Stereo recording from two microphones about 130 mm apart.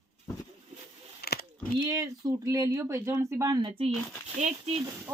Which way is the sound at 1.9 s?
25° right (ahead or behind).